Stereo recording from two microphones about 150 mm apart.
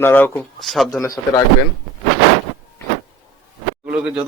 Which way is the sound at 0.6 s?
Centre (ahead or behind).